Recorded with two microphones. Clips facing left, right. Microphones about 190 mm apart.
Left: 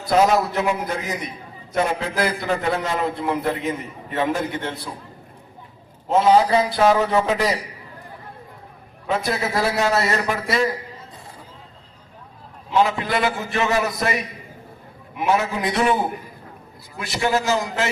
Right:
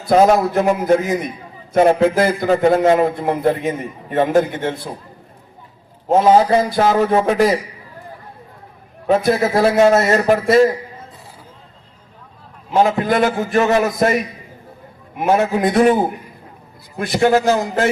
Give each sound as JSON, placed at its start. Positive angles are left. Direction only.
{"t": 0.0, "sound": "a man's voice", "side_deg": -50}
{"t": 6.1, "sound": "a man's voice", "side_deg": -50}
{"t": 9.4, "sound": "a man's voice", "side_deg": -50}
{"t": 12.7, "sound": "a man's voice", "side_deg": -45}
{"t": 17.0, "sound": "a man's voice", "side_deg": -55}